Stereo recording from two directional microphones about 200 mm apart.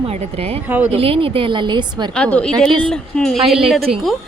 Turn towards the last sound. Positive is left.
turn(degrees=0)  # may be behind; listen again after turning